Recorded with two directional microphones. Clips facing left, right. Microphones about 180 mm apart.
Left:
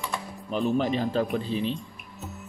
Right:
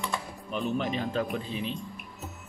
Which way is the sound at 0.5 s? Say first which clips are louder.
Left 5 dB; 35° left (ahead or behind).